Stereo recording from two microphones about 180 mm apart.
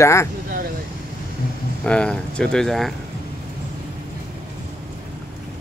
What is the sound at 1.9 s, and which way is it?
Speech, 5° left (ahead or behind).